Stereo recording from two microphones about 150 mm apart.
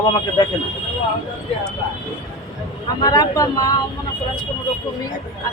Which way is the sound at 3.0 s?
25° left (ahead or behind).